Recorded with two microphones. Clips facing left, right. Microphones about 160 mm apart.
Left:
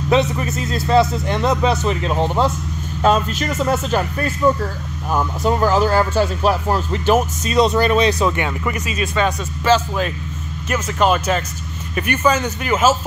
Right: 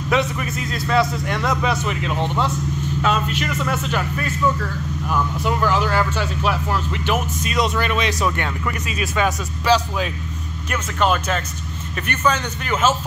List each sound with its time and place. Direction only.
0.1 s speech: 30° left (ahead or behind)
8.3 s a man's voice: 15° left (ahead or behind)
8.8 s a man's voice: 5° right (ahead or behind)